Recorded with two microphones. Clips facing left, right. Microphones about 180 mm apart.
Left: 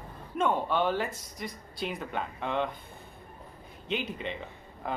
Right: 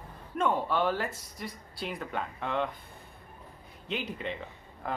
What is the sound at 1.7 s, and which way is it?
Speech, centre (ahead or behind).